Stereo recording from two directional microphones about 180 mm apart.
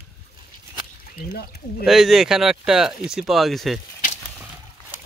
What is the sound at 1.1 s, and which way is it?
Speech, 60° left (ahead or behind).